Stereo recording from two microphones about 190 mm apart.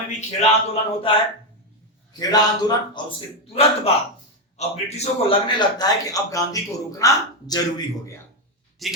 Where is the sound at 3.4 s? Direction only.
30° left (ahead or behind).